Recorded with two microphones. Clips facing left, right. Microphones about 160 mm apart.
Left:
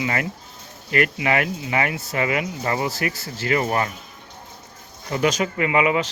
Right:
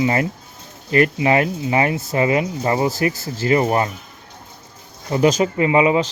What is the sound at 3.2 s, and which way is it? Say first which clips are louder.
Speech: right 6 dB; 40° right (ahead or behind).